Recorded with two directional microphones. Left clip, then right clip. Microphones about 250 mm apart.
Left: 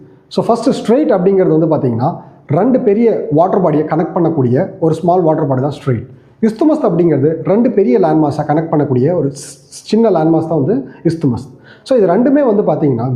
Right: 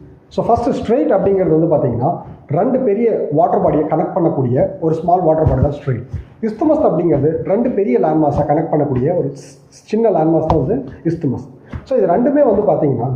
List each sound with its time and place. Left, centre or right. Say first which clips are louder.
0.3 s speech: left 1 dB; left
11.9 s speech: left 3 dB; left